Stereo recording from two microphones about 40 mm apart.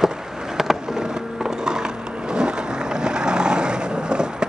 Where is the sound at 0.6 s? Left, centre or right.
Centre.